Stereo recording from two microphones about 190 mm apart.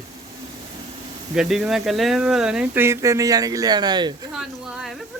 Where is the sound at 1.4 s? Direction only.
Centre (ahead or behind); by 4.1 s 20° right (ahead or behind).